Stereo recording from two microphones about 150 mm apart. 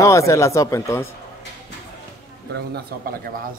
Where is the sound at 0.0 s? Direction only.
20° left (ahead or behind).